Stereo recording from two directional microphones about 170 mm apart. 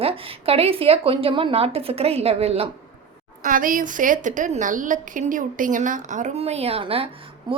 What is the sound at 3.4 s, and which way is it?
A woman's voice, 55° right (ahead or behind).